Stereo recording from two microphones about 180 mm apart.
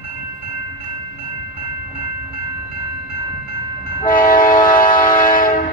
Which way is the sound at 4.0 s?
50° left (ahead or behind).